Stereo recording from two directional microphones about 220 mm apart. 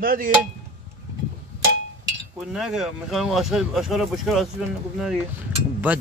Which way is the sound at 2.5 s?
Centre (ahead or behind).